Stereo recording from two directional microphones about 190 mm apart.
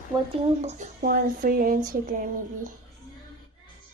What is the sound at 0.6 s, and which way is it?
Speech, 35° right (ahead or behind).